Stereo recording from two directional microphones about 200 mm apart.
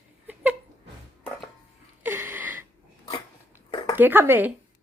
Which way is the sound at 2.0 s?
10° right (ahead or behind).